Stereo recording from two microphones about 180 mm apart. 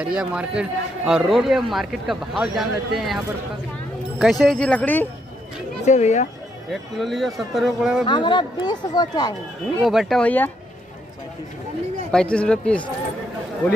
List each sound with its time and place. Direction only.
0.0 s a man's voice: 5° right (ahead or behind)
4.2 s a man's voice: centre (ahead or behind)
5.9 s speech: 40° left (ahead or behind)
6.7 s a man's voice: centre (ahead or behind)
8.1 s speech: 25° left (ahead or behind)
9.8 s a man's voice: centre (ahead or behind)
12.1 s a man's voice: 5° left (ahead or behind)